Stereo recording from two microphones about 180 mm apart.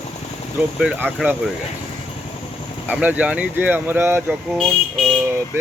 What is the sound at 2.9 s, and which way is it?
Speech, 10° right (ahead or behind).